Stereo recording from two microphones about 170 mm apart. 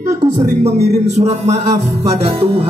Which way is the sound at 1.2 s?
40° right (ahead or behind).